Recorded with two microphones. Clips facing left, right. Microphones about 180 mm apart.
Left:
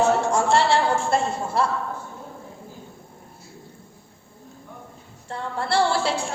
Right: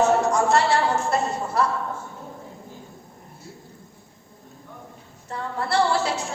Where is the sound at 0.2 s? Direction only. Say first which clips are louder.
Even; 30° left (ahead or behind).